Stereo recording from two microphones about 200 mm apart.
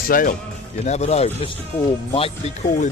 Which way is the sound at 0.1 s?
45° left (ahead or behind).